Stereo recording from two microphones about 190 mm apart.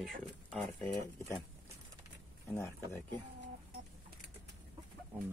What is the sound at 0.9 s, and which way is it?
Speech, 20° left (ahead or behind).